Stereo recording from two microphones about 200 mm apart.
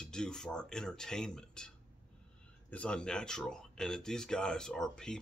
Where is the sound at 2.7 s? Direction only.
5° left (ahead or behind).